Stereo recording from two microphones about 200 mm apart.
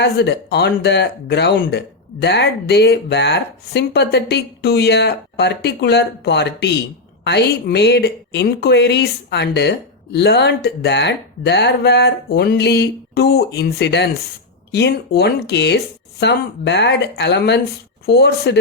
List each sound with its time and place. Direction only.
0.0 s speech: 55° left (ahead or behind)